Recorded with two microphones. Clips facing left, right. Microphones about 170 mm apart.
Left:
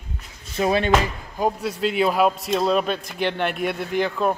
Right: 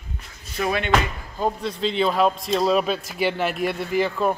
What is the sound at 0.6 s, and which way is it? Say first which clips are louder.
Speech: left 4 dB; 30° left (ahead or behind).